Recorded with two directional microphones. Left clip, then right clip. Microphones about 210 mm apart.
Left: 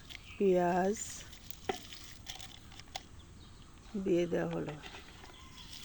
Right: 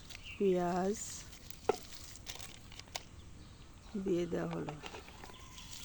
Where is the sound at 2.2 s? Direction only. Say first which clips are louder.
Even; 20° right (ahead or behind).